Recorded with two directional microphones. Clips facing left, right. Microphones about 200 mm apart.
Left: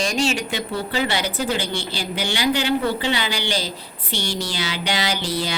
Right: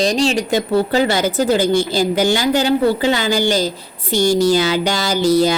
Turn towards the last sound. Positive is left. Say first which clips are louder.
# right 11 dB
turn(degrees=-45)  # may be behind; listen again after turning